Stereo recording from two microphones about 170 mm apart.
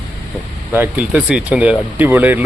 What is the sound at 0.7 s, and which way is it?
Speech, 10° right (ahead or behind).